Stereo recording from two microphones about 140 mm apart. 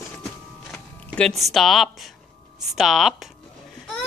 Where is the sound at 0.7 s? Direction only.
Centre (ahead or behind).